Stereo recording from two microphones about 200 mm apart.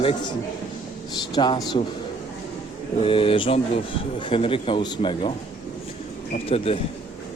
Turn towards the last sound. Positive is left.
turn(degrees=30)  # may be behind; listen again after turning